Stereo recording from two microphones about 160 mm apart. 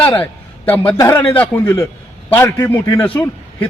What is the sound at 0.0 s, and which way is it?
A man's voice, 10° left (ahead or behind).